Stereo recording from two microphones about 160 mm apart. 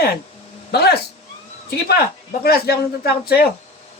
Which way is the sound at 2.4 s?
75° left (ahead or behind).